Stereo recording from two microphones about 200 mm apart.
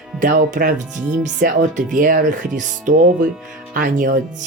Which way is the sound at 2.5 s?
40° right (ahead or behind).